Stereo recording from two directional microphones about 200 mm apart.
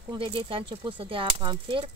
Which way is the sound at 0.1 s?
25° right (ahead or behind).